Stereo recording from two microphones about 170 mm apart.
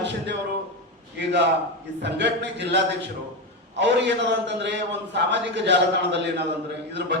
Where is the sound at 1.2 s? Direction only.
90° right.